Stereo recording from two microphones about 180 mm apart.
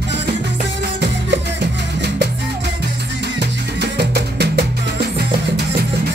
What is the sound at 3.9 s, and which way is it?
Music, 65° right (ahead or behind).